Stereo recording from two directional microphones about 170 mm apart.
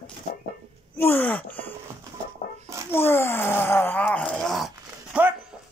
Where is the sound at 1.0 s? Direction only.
10° left (ahead or behind).